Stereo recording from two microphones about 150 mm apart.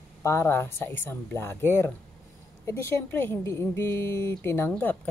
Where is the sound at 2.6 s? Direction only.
20° left (ahead or behind).